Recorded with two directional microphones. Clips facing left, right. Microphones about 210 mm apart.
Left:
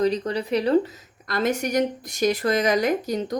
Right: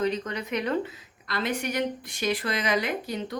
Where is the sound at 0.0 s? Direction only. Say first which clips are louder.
Left 5 dB; 35° left (ahead or behind).